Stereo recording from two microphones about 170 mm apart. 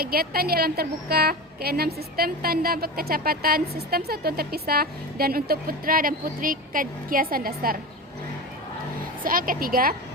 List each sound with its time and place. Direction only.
0.0 s a woman's voice: 60° right (ahead or behind)
9.2 s a woman's voice: 55° right (ahead or behind)